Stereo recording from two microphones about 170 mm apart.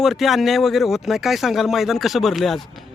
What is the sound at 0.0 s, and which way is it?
Speech, centre (ahead or behind).